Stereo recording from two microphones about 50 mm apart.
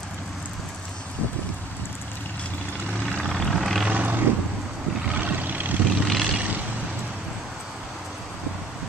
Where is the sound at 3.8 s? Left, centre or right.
Right.